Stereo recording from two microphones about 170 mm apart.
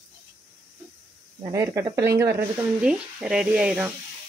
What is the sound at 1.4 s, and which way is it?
Speech, 15° right (ahead or behind).